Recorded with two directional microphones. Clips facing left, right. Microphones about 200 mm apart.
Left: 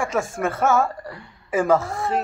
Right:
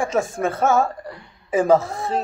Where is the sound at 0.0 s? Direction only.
20° right (ahead or behind).